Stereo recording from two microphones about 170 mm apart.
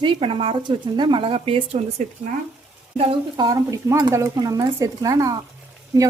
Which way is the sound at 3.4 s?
20° right (ahead or behind).